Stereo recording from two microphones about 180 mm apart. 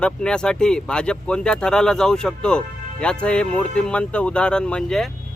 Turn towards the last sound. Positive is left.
turn(degrees=5)  # may be behind; listen again after turning